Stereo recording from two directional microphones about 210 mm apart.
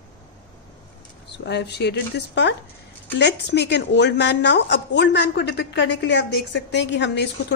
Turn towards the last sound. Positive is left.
turn(degrees=55)  # may be behind; listen again after turning